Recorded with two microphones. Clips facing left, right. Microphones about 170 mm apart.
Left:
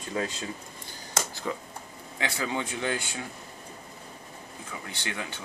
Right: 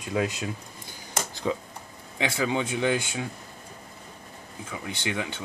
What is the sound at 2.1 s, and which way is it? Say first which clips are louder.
Speech: right 4 dB; 15° right (ahead or behind).